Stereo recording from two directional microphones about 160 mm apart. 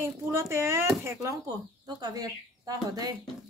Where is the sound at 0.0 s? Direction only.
15° right (ahead or behind).